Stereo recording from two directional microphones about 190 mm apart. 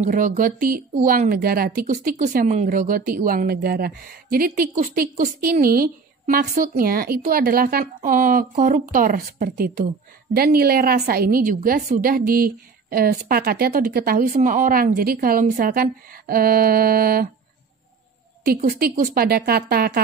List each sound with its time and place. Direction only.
0.0 s a woman's voice: 40° right (ahead or behind)
1.9 s a woman's voice: 40° right (ahead or behind)
18.6 s speech: 50° right (ahead or behind)